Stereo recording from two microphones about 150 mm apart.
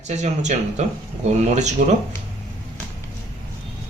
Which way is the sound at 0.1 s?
50° right (ahead or behind).